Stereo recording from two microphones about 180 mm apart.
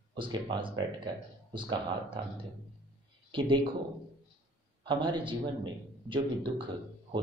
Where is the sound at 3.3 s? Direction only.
30° right (ahead or behind).